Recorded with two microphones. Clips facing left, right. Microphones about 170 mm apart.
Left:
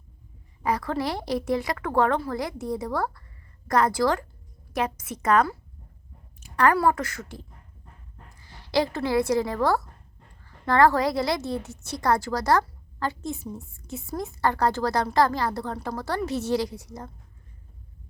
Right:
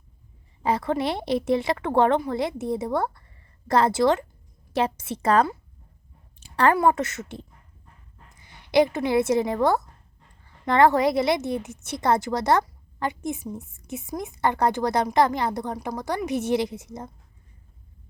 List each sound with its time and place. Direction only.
0.6 s a woman's voice: 25° right (ahead or behind)
6.4 s a sound: 30° right (ahead or behind)
6.7 s a woman's voice: 20° right (ahead or behind)